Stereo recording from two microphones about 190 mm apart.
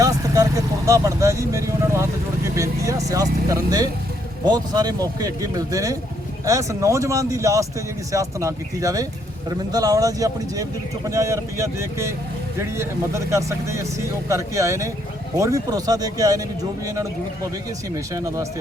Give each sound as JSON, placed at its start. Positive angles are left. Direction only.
{"t": 0.9, "sound": "speech", "side_deg": -15}